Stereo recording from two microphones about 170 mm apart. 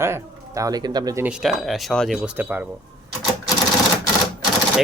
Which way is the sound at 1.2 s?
Centre (ahead or behind).